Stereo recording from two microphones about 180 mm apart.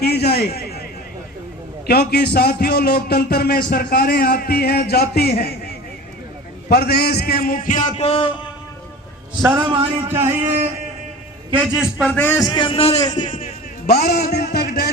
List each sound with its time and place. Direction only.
0.0 s a man's voice: 65° left (ahead or behind)
1.9 s a man's voice: 60° left (ahead or behind)
6.7 s a man's voice: 60° left (ahead or behind); by 8.3 s 30° left (ahead or behind)
9.4 s a man's voice: 15° right (ahead or behind)
9.6 s a man's voice: 25° right (ahead or behind)
10.2 s speech: 40° right (ahead or behind)
11.5 s a man's voice: 5° right (ahead or behind)
12.1 s a man's voice: 10° left (ahead or behind)
12.4 s a man's voice: 25° left (ahead or behind)
13.8 s a man's voice: 60° left (ahead or behind)
14.5 s music: 65° left (ahead or behind)